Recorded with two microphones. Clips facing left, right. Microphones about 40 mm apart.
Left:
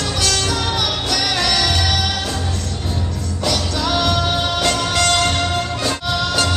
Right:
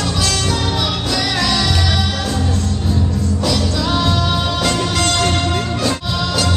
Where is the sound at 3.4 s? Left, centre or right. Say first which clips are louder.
Even; left.